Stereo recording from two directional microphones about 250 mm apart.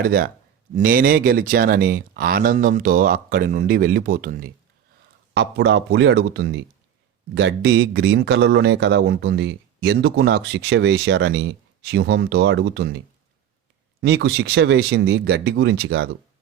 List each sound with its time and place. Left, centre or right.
0.0 s speech: right
14.0 s speech: right